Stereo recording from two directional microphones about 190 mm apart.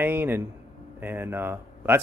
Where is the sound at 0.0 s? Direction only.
10° right (ahead or behind).